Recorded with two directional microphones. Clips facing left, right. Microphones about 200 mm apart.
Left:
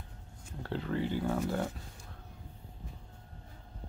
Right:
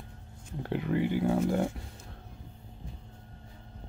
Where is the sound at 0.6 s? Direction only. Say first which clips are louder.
Right 5 dB; 15° right (ahead or behind).